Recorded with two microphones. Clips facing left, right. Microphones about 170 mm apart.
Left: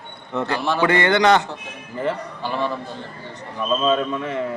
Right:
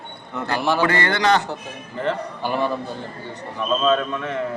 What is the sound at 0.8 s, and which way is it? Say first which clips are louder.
Speech: left 3 dB; 20° left (ahead or behind).